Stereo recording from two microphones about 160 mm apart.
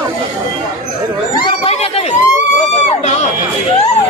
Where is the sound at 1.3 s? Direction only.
35° left (ahead or behind).